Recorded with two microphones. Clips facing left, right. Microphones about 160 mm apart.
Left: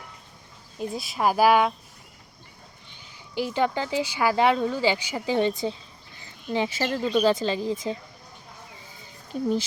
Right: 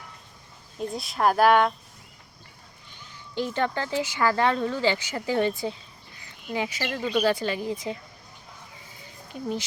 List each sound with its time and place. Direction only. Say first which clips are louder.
0.8 s speech: right 1 dB; centre (ahead or behind)
3.3 s a woman's voice: left 2 dB; 10° left (ahead or behind); by 7.9 s 30° left (ahead or behind)